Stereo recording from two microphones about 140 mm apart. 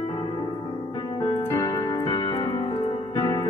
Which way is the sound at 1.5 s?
25° left (ahead or behind).